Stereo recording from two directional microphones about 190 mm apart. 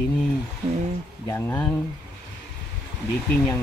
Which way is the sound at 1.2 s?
10° left (ahead or behind).